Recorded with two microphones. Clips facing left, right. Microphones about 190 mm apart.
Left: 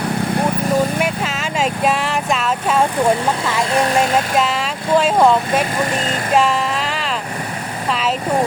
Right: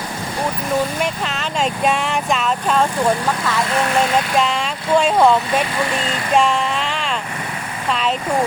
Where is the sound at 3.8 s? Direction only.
35° left (ahead or behind).